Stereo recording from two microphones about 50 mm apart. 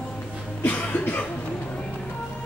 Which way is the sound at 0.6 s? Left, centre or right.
Left.